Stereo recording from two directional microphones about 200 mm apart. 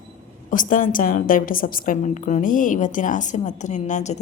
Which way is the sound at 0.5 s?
40° left (ahead or behind).